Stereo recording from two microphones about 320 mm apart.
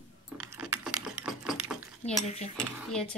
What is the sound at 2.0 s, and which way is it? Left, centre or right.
Speech, centre.